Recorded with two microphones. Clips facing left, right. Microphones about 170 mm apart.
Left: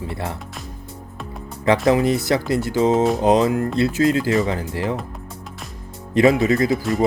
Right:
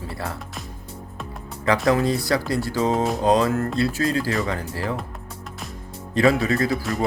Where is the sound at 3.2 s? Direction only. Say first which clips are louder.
Left 3 dB; 20° left (ahead or behind).